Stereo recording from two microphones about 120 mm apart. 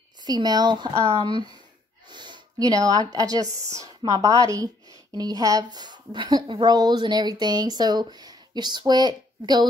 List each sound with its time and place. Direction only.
0.2 s speech: 35° right (ahead or behind)
2.0 s speech: 40° right (ahead or behind)